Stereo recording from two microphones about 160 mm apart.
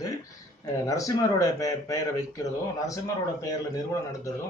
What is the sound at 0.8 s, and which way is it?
Speech, 20° left (ahead or behind).